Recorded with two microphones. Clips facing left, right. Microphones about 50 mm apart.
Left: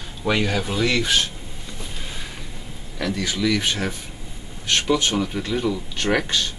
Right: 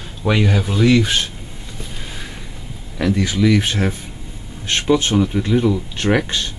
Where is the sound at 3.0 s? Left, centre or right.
Centre.